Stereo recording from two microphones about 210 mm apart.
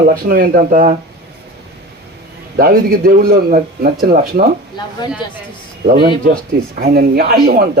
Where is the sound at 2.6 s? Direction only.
45° right (ahead or behind).